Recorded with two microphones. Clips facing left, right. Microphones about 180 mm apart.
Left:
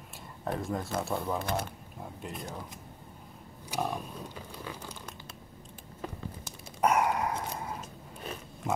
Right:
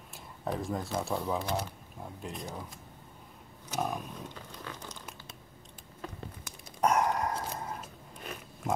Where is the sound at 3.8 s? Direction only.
Centre (ahead or behind).